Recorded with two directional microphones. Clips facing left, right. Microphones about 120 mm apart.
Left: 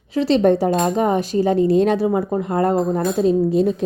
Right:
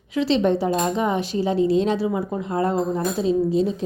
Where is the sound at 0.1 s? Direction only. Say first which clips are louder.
Left 4 dB; 40° left (ahead or behind).